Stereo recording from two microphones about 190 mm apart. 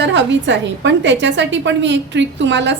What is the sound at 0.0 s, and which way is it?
A woman's voice, 70° right (ahead or behind).